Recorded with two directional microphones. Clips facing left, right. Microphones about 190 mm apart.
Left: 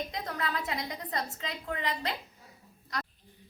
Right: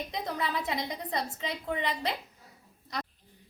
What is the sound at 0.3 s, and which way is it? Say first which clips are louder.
A woman's voice: right 4 dB; 20° right (ahead or behind).